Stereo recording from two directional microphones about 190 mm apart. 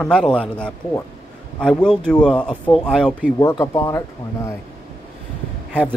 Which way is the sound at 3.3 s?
15° left (ahead or behind).